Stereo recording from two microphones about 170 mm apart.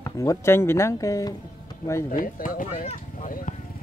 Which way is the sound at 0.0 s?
15° left (ahead or behind).